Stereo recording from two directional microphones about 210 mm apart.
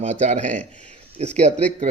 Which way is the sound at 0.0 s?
30° right (ahead or behind).